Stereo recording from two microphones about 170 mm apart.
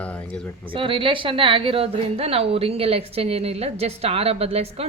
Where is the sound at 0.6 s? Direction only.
30° right (ahead or behind).